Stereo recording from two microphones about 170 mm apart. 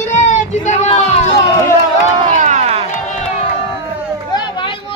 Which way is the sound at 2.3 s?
45° right (ahead or behind).